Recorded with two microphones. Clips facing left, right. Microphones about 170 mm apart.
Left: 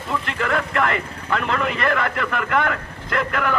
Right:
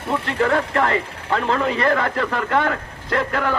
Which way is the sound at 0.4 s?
35° right (ahead or behind).